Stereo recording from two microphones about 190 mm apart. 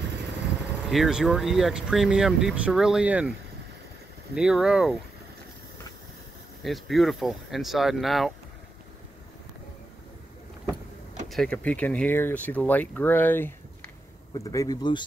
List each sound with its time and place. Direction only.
0.8 s speech: centre (ahead or behind)
4.4 s speech: 5° right (ahead or behind)
6.6 s speech: centre (ahead or behind)
11.2 s speech: 5° left (ahead or behind); by 15.0 s 25° left (ahead or behind)